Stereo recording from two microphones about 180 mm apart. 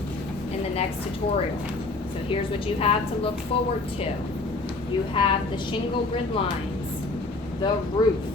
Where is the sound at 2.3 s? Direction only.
35° left (ahead or behind).